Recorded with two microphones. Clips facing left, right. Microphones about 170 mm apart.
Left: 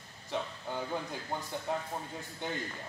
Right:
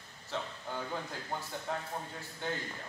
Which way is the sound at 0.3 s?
15° left (ahead or behind).